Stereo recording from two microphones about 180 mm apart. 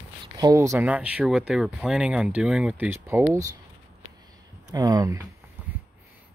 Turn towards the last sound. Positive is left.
turn(degrees=-20)  # may be behind; listen again after turning